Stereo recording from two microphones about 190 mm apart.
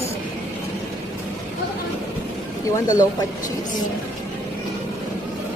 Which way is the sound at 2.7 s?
20° left (ahead or behind).